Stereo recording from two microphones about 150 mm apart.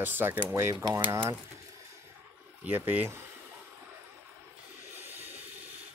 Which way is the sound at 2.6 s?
10° right (ahead or behind).